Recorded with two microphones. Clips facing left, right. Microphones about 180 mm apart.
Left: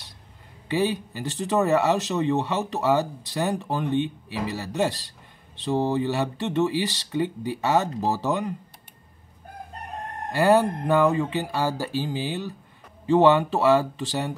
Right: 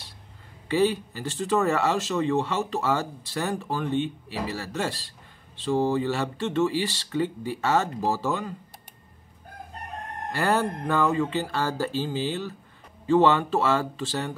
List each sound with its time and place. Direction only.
0.7 s speech: 15° left (ahead or behind)
10.3 s speech: 15° left (ahead or behind)